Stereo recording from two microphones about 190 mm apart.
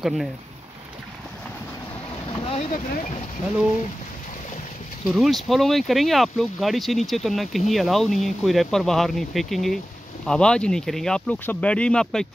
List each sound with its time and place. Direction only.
2.5 s speech: 40° left (ahead or behind)
5.0 s speech: centre (ahead or behind)